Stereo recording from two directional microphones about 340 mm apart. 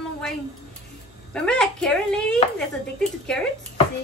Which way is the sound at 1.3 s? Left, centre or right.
Centre.